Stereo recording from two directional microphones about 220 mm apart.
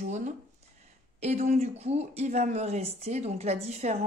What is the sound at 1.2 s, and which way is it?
Speech, 30° right (ahead or behind).